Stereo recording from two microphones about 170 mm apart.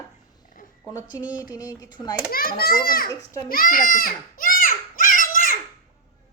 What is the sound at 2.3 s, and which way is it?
Speech, 60° left (ahead or behind).